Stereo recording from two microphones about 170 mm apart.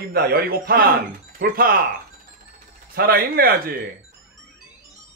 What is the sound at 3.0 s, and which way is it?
Speech, 60° right (ahead or behind).